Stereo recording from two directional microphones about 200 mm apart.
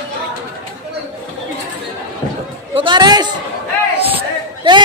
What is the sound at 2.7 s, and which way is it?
Speech, 25° right (ahead or behind).